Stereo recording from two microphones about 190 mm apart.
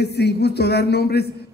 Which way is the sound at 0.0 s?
60° left (ahead or behind).